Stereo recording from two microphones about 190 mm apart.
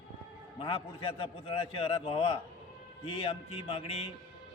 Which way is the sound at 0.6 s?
30° left (ahead or behind).